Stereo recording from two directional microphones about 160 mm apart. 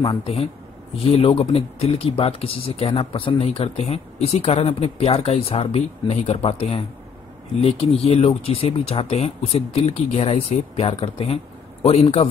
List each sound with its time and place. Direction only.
0.2 s speech: 35° left (ahead or behind)
8.0 s speech: 40° left (ahead or behind)